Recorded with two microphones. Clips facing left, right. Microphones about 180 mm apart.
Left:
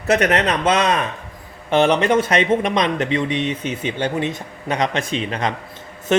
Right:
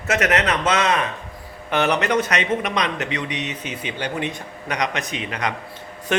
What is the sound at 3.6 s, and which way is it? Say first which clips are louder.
Speech: left 6 dB; 10° right (ahead or behind).